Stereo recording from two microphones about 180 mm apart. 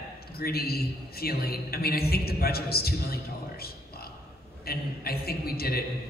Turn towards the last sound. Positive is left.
turn(degrees=60)  # may be behind; listen again after turning